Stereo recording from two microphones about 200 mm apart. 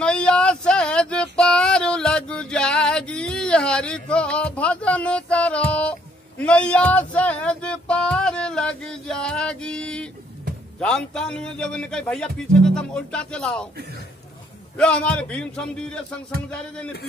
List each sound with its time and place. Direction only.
0.0 s a sound: 5° left (ahead or behind)
10.8 s a man's voice: 5° left (ahead or behind)
14.8 s a man's voice: 5° left (ahead or behind)